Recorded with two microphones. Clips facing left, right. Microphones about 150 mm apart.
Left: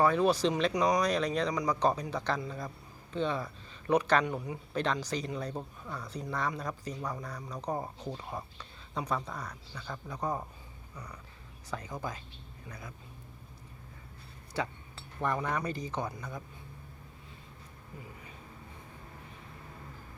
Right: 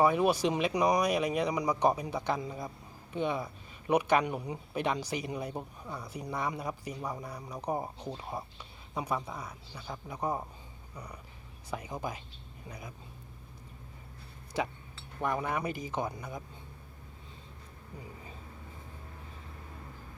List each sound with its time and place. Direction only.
0.0 s a man's voice: 15° right (ahead or behind)
14.5 s speech: 15° right (ahead or behind)